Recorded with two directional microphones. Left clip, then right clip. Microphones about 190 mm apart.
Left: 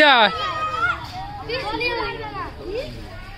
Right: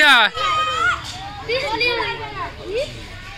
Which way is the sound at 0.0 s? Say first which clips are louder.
Right 1 dB; centre (ahead or behind).